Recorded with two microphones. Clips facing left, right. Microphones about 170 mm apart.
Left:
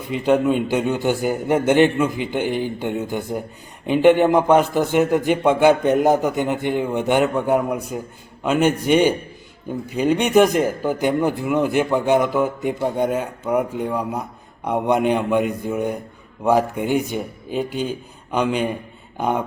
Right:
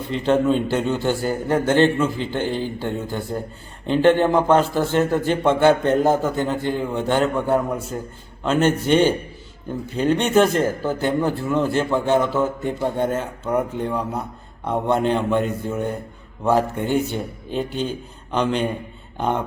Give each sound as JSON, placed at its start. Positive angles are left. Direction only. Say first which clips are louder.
{"t": 0.1, "sound": "speech", "louder": "left 1 dB", "side_deg": 10}